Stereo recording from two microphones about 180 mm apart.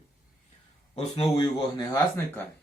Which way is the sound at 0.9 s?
30° left (ahead or behind).